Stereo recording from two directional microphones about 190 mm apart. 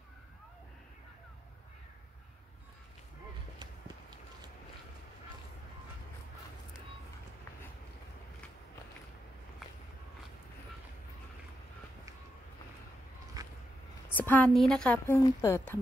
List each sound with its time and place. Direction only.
13.4 s vehicle: 20° right (ahead or behind)
14.1 s a woman's voice: 10° left (ahead or behind)